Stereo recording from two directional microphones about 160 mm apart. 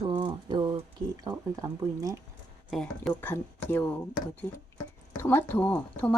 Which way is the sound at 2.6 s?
Centre (ahead or behind).